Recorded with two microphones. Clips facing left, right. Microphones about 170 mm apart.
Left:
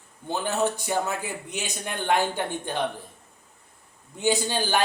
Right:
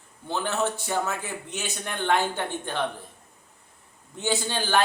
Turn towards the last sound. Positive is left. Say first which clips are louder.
# even
turn(degrees=15)  # may be behind; listen again after turning